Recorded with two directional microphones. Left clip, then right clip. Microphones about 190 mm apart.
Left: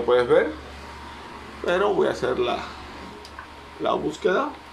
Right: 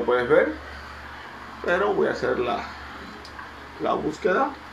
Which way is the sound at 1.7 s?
10° left (ahead or behind).